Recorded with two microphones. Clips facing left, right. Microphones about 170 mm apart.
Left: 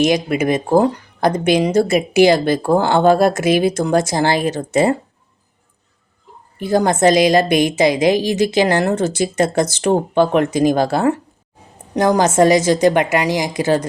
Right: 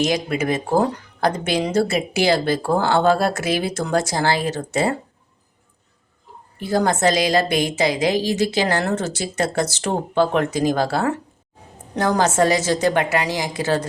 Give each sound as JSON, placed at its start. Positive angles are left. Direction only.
{"t": 0.0, "sound": "speech", "side_deg": 20}
{"t": 6.6, "sound": "speech", "side_deg": 20}